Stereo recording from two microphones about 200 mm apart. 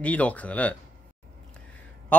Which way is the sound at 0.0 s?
5° left (ahead or behind).